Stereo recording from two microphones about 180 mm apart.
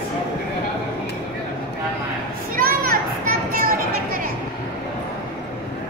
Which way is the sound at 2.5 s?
55° right (ahead or behind).